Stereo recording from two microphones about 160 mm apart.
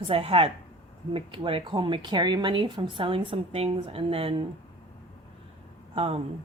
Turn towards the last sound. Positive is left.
turn(degrees=-35)  # may be behind; listen again after turning